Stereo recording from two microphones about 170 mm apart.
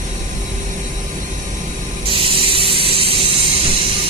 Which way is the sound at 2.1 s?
30° right (ahead or behind).